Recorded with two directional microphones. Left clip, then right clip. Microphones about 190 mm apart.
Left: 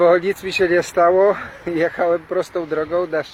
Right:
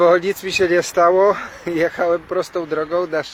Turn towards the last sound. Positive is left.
turn(degrees=-5)  # may be behind; listen again after turning